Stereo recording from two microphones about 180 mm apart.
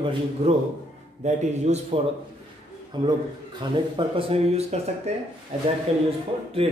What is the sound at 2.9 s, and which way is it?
Speech, 25° right (ahead or behind).